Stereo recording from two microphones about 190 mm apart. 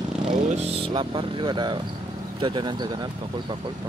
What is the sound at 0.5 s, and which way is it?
Speech, 30° right (ahead or behind).